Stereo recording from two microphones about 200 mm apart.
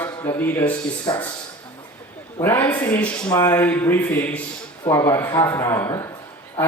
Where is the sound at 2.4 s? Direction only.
10° left (ahead or behind).